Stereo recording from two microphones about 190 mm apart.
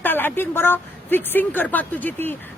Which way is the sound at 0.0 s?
10° left (ahead or behind).